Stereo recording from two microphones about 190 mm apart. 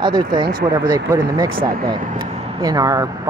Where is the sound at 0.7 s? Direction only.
20° right (ahead or behind).